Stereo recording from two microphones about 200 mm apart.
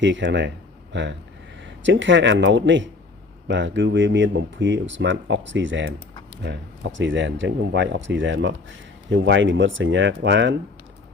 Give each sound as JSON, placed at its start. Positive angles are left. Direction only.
{"t": 0.0, "sound": "speech", "side_deg": -65}